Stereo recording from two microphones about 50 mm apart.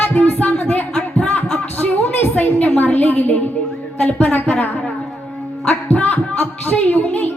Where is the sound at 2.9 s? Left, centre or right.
Left.